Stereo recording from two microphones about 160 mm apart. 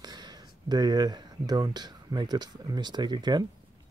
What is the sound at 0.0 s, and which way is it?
Speech, 25° right (ahead or behind).